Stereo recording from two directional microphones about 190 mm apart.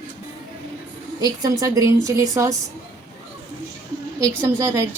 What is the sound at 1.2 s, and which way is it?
A woman's voice, 20° right (ahead or behind).